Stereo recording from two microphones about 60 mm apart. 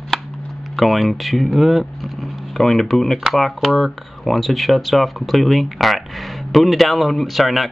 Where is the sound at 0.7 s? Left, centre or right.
Centre.